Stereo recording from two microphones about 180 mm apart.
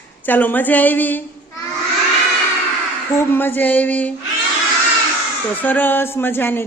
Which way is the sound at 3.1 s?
15° left (ahead or behind).